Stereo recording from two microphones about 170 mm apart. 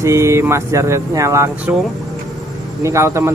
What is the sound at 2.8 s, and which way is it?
Speech, 15° right (ahead or behind).